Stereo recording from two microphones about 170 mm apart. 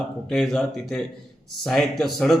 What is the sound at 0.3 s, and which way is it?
A man's voice, centre (ahead or behind).